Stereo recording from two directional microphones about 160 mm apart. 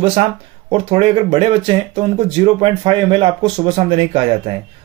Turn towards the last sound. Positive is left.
turn(degrees=-35)  # may be behind; listen again after turning